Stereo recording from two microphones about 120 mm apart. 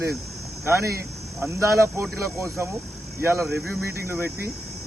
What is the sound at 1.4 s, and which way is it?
Speech, 25° right (ahead or behind).